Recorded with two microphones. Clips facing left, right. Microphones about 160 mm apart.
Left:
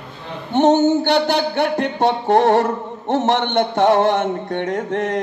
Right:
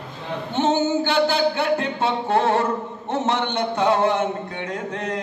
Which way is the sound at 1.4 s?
65° left (ahead or behind).